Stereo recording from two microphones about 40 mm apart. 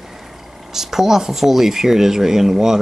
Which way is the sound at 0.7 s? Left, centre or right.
Centre.